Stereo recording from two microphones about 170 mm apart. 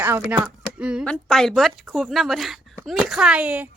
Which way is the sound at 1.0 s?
5° left (ahead or behind).